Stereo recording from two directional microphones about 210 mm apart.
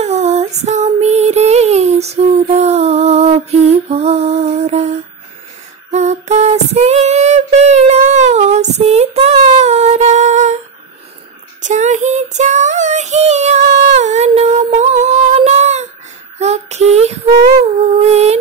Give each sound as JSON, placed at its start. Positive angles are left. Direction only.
{"t": 0.0, "sound": "female singing", "side_deg": -30}
{"t": 5.9, "sound": "female singing", "side_deg": -35}
{"t": 11.6, "sound": "child singing", "side_deg": -35}
{"t": 16.3, "sound": "female singing", "side_deg": -30}
{"t": 18.0, "sound": "a sound", "side_deg": -30}